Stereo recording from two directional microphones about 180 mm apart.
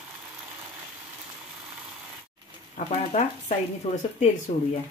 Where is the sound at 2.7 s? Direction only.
40° left (ahead or behind).